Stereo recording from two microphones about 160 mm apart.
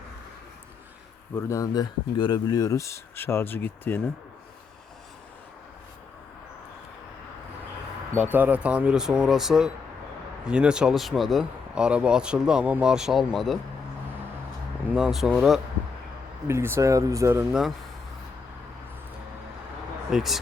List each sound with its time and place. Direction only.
1.4 s speech: 20° left (ahead or behind)
8.1 s speech: 10° right (ahead or behind)
14.9 s speech: 5° right (ahead or behind)
16.5 s speech: 15° right (ahead or behind)
20.1 s speech: centre (ahead or behind)